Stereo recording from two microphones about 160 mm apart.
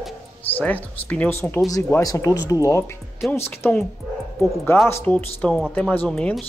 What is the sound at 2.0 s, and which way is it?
Speech, 20° left (ahead or behind).